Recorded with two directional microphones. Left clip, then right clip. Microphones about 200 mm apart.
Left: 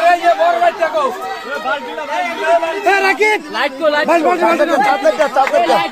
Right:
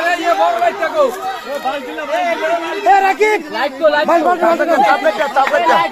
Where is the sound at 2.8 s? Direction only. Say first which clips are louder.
Right 4 dB; 30° left (ahead or behind).